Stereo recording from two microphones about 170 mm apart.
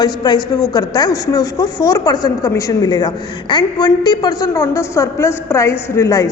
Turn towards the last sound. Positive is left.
turn(degrees=20)  # may be behind; listen again after turning